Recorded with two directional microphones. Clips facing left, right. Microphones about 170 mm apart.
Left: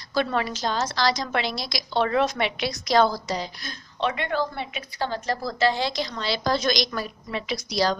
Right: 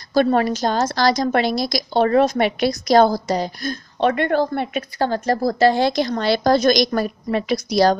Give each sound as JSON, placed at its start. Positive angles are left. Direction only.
{"t": 0.1, "sound": "a woman's voice", "side_deg": -45}